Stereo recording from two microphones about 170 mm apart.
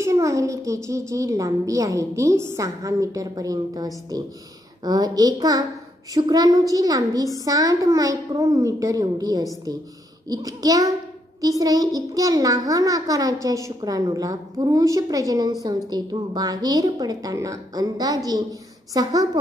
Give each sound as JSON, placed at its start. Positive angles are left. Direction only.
{"t": 0.0, "sound": "a child's voice", "side_deg": -20}